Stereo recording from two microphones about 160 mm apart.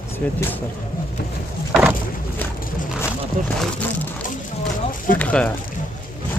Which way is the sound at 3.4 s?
55° right (ahead or behind).